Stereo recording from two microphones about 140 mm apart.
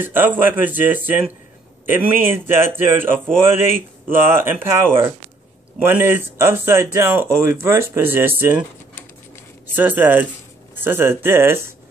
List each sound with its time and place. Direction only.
0.0 s speech: 15° right (ahead or behind)
9.8 s speech: 15° right (ahead or behind)